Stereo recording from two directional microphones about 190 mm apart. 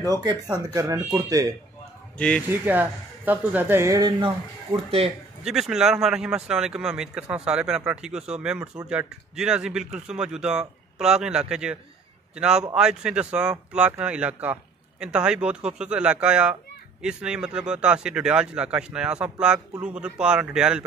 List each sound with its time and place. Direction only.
0.0 s speech: 20° right (ahead or behind)
2.1 s speech: 5° left (ahead or behind)
2.5 s speech: 10° right (ahead or behind)